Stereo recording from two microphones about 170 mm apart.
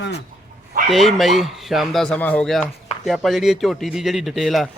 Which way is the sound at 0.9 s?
Centre (ahead or behind).